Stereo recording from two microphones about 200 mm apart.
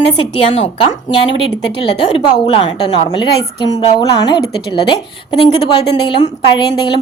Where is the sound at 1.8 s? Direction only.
25° left (ahead or behind).